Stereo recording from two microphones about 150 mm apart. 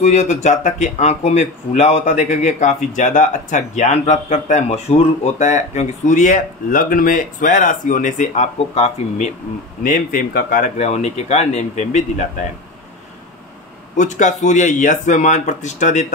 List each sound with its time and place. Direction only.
0.0 s speech: 50° left (ahead or behind)
9.8 s speech: 65° left (ahead or behind)
10.8 s speech: 50° left (ahead or behind)
13.9 s a man's voice: 55° left (ahead or behind)